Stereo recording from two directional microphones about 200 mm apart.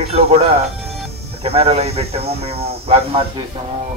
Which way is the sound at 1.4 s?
30° right (ahead or behind).